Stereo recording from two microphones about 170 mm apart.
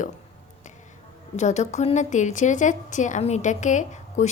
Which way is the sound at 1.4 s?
40° left (ahead or behind).